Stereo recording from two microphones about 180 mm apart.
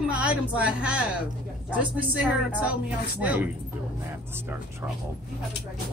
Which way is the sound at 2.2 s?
10° right (ahead or behind).